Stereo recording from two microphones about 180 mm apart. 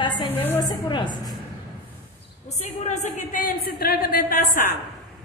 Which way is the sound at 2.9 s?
40° left (ahead or behind).